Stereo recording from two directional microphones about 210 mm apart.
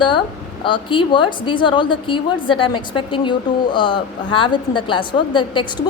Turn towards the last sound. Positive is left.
turn(degrees=20)  # may be behind; listen again after turning